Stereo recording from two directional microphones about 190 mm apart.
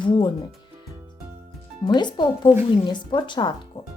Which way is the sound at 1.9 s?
25° left (ahead or behind).